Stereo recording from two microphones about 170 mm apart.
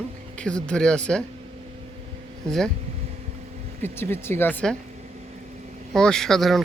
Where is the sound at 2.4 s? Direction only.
5° left (ahead or behind).